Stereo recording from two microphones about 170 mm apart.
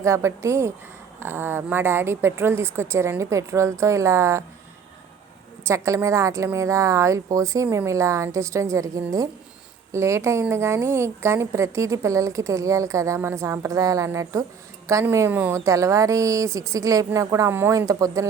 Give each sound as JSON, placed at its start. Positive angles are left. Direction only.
{"t": 0.0, "sound": "a woman's voice", "side_deg": -15}
{"t": 5.6, "sound": "a woman's voice", "side_deg": -15}